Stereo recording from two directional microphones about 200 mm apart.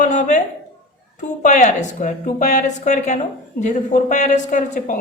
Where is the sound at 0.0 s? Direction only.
35° left (ahead or behind).